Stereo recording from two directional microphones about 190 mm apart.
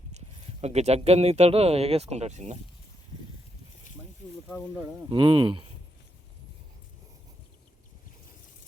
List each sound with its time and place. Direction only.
0.6 s speech: 35° right (ahead or behind)
4.4 s speech: 10° right (ahead or behind)
5.0 s speech: 25° right (ahead or behind)